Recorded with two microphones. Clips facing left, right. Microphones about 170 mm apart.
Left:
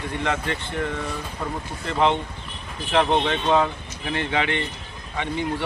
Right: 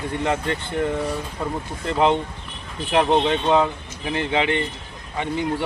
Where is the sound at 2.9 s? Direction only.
10° right (ahead or behind).